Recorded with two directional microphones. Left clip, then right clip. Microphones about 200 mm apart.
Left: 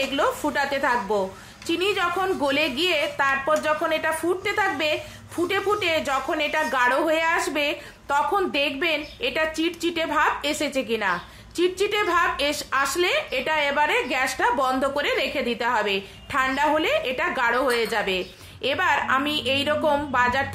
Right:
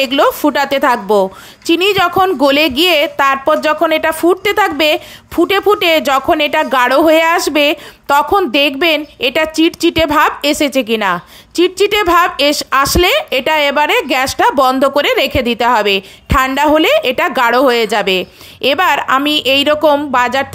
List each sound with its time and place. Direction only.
0.0 s a woman's voice: 45° right (ahead or behind)